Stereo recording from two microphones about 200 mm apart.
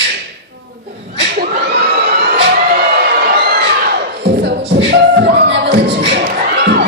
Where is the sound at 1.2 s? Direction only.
55° right (ahead or behind).